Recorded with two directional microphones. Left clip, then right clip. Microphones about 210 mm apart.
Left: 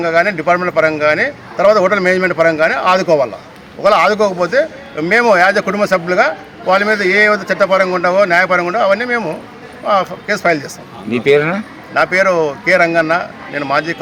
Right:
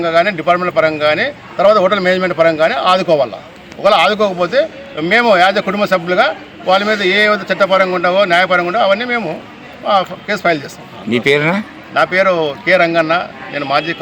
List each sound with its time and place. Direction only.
0.0 s a man's voice: centre (ahead or behind)
11.1 s speech: 40° right (ahead or behind)
11.9 s a man's voice: centre (ahead or behind)